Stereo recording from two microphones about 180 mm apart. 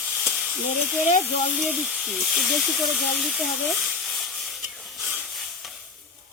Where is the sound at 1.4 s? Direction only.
Centre (ahead or behind).